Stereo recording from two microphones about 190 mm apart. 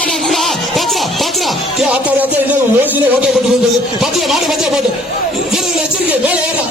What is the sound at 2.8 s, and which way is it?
Speech, 10° right (ahead or behind).